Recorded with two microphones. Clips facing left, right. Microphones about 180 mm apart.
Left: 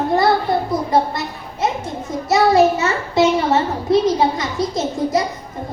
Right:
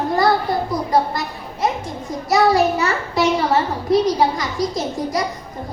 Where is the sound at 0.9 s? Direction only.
25° left (ahead or behind).